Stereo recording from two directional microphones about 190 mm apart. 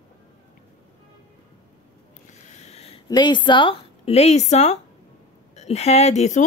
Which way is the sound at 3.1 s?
25° left (ahead or behind).